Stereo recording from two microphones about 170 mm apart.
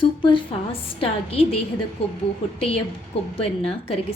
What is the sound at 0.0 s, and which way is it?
A woman's voice, 30° left (ahead or behind).